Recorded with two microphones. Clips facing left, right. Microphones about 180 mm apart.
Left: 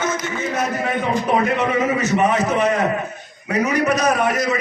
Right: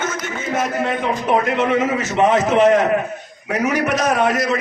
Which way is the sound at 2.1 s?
90° right.